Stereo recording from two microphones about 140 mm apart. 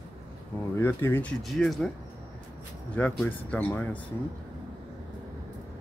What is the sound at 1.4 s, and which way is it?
Speech, centre (ahead or behind).